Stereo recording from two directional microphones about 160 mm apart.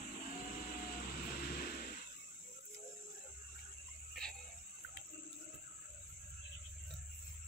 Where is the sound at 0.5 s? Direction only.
65° left (ahead or behind).